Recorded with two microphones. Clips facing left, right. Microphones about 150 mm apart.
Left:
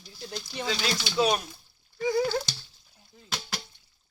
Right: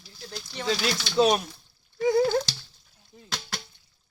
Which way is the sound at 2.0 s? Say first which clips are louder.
Right 4 dB; centre (ahead or behind).